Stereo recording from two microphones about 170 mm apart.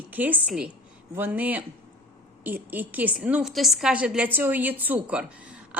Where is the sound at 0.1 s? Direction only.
10° right (ahead or behind).